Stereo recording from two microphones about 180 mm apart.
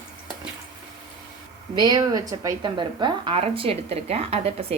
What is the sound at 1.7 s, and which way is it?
Speech, 20° right (ahead or behind).